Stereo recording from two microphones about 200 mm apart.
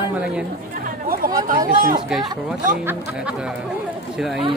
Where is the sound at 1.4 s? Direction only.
45° right (ahead or behind).